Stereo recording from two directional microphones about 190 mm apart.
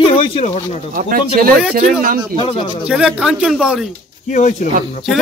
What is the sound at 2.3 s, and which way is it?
Speech, 30° left (ahead or behind).